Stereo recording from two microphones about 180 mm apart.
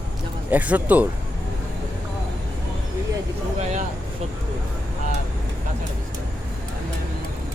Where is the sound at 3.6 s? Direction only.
40° right (ahead or behind).